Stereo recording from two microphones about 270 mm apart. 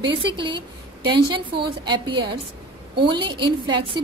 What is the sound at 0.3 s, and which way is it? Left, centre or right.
A woman's voice, centre.